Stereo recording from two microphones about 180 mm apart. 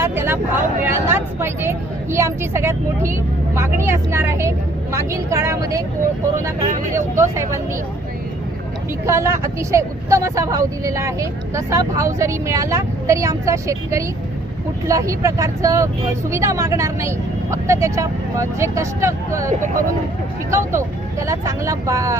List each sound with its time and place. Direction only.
0.0 s speech: 15° right (ahead or behind)
6.9 s speech: 15° right (ahead or behind)
9.0 s speech: 15° right (ahead or behind)
19.5 s speech: 45° right (ahead or behind)
20.5 s speech: 15° right (ahead or behind)